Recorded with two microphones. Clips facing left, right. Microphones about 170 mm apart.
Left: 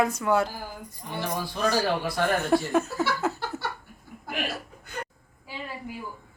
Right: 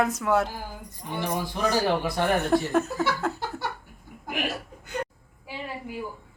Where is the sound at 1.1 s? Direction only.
20° right (ahead or behind).